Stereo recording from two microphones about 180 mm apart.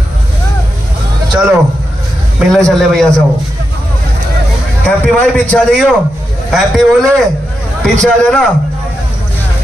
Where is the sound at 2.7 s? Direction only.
Centre (ahead or behind).